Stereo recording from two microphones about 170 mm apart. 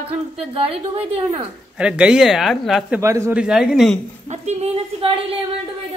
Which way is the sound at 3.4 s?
5° right (ahead or behind).